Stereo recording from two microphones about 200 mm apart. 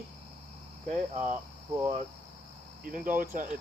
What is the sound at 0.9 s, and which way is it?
Speech, 35° right (ahead or behind).